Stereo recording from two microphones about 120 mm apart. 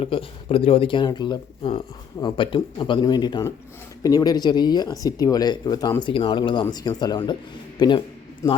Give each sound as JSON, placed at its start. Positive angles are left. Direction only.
{"t": 0.0, "sound": "speech", "side_deg": 50}
{"t": 6.0, "sound": "speech", "side_deg": 45}
{"t": 8.4, "sound": "a man's voice", "side_deg": 30}